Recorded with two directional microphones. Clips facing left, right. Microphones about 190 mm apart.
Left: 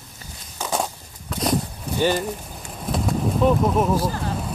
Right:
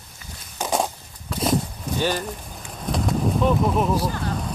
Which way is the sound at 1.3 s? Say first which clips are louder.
Even; 5° right (ahead or behind).